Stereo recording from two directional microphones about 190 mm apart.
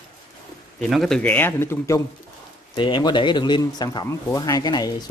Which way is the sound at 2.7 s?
25° left (ahead or behind).